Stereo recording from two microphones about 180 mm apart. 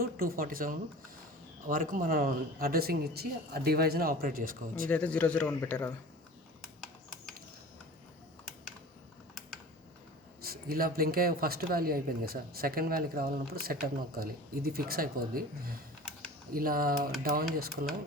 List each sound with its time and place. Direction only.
0.0 s speech: 55° right (ahead or behind)
4.9 s a man's voice: 5° left (ahead or behind)
10.4 s speech: 55° right (ahead or behind)